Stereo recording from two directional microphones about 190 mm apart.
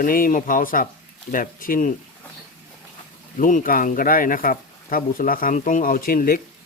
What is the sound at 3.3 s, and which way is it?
Speech, 45° left (ahead or behind).